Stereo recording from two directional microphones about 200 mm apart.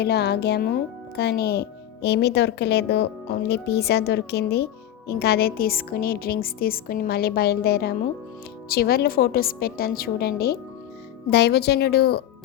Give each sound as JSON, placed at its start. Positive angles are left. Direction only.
{"t": 0.0, "sound": "a woman's voice", "side_deg": 55}